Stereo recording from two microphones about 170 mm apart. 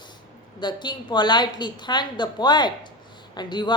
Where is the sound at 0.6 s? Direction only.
25° left (ahead or behind).